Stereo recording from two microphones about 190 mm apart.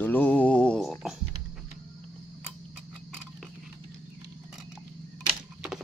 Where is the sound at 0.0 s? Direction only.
10° left (ahead or behind).